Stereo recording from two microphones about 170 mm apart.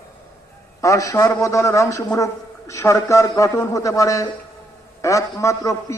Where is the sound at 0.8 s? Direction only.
20° left (ahead or behind).